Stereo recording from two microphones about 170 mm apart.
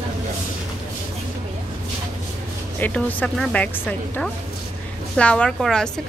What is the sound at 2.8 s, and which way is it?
A woman's voice, 10° left (ahead or behind).